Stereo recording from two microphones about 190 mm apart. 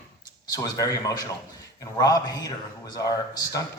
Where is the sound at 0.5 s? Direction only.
20° left (ahead or behind).